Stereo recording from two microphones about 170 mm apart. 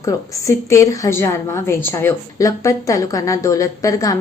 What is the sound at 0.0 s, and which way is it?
A woman's voice, 15° left (ahead or behind).